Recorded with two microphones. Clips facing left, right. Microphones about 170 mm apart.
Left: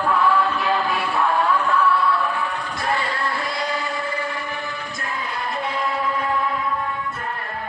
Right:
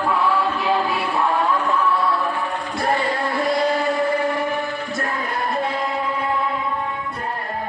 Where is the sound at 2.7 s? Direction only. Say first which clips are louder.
Right 6 dB; 40° right (ahead or behind); by 4.4 s 55° right (ahead or behind).